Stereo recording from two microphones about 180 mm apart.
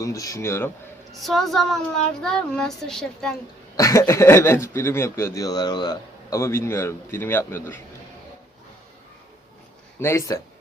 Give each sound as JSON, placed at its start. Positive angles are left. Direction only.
{"t": 0.0, "sound": "speech", "side_deg": 20}
{"t": 1.1, "sound": "a child's voice", "side_deg": 0}
{"t": 3.8, "sound": "speech", "side_deg": 15}
{"t": 10.0, "sound": "speech", "side_deg": 15}